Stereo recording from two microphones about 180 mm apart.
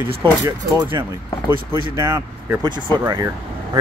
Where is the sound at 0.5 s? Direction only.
25° right (ahead or behind).